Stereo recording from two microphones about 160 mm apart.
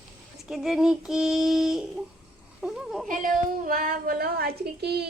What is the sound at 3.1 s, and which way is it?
A woman's voice, 60° right (ahead or behind).